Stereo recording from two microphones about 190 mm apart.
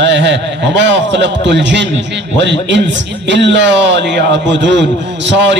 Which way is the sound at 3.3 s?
70° right (ahead or behind).